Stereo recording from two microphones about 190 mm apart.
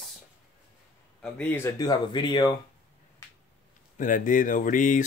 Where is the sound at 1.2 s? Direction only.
10° left (ahead or behind).